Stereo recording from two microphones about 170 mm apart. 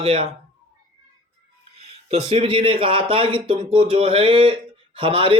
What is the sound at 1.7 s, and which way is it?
Speech, 35° right (ahead or behind).